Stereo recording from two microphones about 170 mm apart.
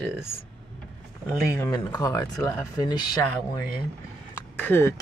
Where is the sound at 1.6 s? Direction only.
20° left (ahead or behind).